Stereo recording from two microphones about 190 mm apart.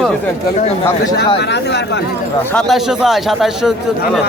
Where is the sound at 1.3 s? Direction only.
65° left (ahead or behind).